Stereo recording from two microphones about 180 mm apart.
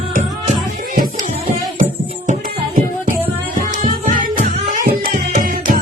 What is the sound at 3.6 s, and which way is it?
Music, 45° right (ahead or behind).